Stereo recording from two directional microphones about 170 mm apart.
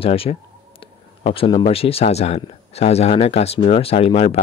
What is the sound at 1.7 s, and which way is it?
Speech, 35° left (ahead or behind).